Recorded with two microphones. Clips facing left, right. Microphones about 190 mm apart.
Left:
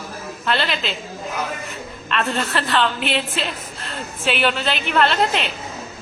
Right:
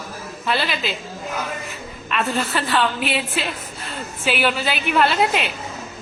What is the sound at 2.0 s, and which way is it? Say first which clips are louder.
A woman's voice: even; 5° right (ahead or behind).